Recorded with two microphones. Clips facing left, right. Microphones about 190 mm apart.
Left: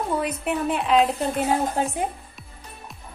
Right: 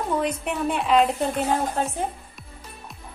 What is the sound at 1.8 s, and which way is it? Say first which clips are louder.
Speech: left 1 dB; 15° left (ahead or behind).